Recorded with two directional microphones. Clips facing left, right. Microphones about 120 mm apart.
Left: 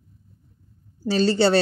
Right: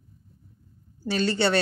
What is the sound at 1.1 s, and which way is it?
Speech, 35° left (ahead or behind).